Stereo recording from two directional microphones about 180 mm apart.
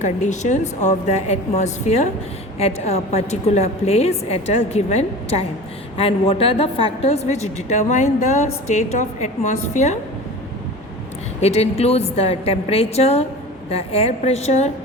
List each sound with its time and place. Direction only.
0.0 s a woman's voice: 40° left (ahead or behind)
11.3 s a woman's voice: 35° left (ahead or behind)